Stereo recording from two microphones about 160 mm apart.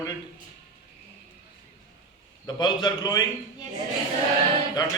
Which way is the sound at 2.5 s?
25° left (ahead or behind).